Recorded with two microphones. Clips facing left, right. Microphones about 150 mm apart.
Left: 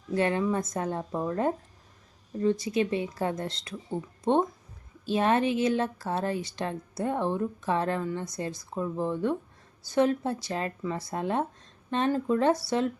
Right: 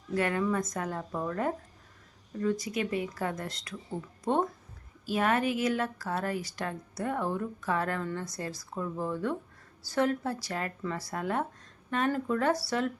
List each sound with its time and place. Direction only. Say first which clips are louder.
0.1 s a woman's voice: left 3 dB; 25° left (ahead or behind)